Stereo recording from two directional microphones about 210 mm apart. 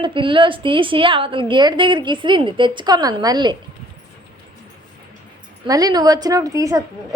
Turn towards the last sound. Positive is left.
turn(degrees=-15)  # may be behind; listen again after turning